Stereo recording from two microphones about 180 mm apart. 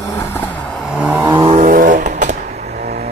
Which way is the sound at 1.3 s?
30° right (ahead or behind).